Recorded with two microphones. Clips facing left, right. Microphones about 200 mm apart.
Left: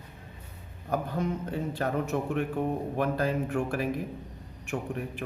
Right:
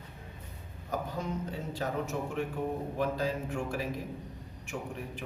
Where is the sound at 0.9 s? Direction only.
55° left (ahead or behind).